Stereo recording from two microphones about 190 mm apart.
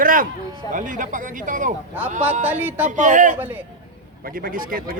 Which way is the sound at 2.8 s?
40° right (ahead or behind).